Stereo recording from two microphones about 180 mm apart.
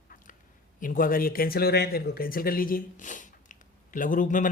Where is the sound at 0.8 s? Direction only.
50° left (ahead or behind).